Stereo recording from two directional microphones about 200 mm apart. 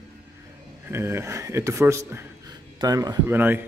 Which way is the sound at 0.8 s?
10° right (ahead or behind).